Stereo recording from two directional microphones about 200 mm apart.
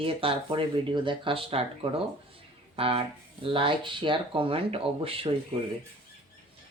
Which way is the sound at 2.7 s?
30° right (ahead or behind).